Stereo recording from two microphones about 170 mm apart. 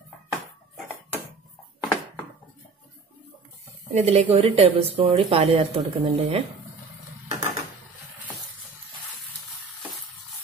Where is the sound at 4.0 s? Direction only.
35° right (ahead or behind).